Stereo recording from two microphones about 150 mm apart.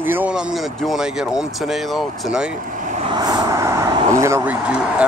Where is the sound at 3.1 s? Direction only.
25° right (ahead or behind); by 5.1 s 10° right (ahead or behind).